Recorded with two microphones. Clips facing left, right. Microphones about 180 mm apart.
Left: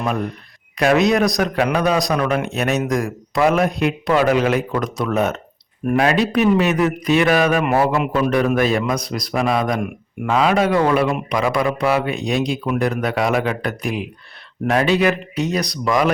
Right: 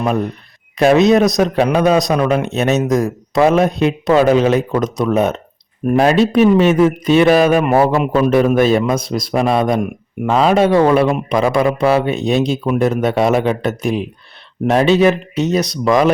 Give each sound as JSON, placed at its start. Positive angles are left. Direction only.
{"t": 0.0, "sound": "a man's voice", "side_deg": -25}
{"t": 6.0, "sound": "a man's voice", "side_deg": -30}